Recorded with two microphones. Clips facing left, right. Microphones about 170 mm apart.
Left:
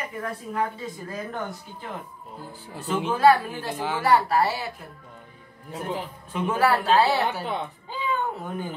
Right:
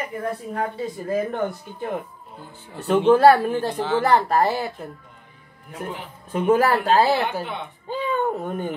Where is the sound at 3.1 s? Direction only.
60° right (ahead or behind).